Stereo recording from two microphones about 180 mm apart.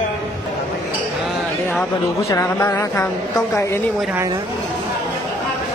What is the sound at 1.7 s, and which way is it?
A woman's voice, 10° left (ahead or behind).